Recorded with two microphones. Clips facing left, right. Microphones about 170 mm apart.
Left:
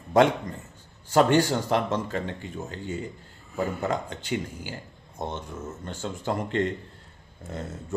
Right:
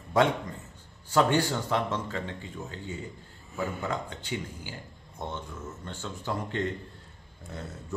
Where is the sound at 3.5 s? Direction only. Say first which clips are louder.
Left 4 dB; 40° left (ahead or behind).